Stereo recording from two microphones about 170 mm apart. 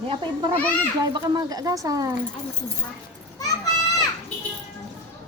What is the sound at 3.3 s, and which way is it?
Children playing, 20° left (ahead or behind).